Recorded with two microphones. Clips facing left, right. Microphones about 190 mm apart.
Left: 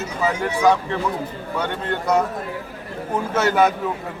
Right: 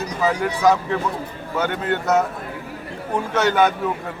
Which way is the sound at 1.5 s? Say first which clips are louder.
Right 3 dB; 5° right (ahead or behind).